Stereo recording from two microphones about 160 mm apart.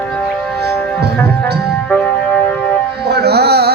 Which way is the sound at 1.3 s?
90° right.